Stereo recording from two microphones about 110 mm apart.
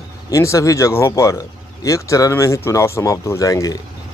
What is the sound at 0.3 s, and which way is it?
Speech, 30° left (ahead or behind).